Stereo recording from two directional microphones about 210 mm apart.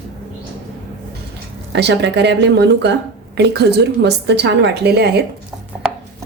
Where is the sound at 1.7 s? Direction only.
55° right (ahead or behind).